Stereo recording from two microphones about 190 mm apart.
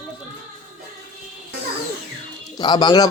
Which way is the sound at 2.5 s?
20° left (ahead or behind).